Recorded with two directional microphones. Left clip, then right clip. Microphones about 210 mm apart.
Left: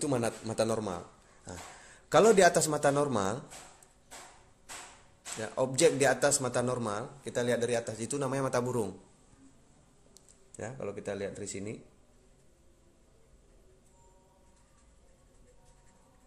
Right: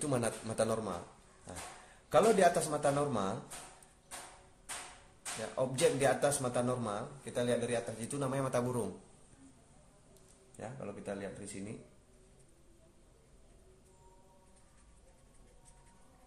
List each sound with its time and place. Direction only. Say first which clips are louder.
0.0 s a man's voice: left 3 dB; 30° left (ahead or behind)
2.0 s a man's voice: left 5 dB; 40° left (ahead or behind)
5.6 s a man's voice: left 5 dB; 40° left (ahead or behind)
10.6 s speech: left 6 dB; 45° left (ahead or behind)